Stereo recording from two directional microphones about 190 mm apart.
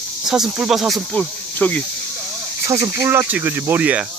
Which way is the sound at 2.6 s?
15° right (ahead or behind).